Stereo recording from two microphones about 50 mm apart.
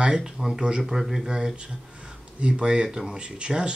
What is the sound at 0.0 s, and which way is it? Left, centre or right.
Speech, centre.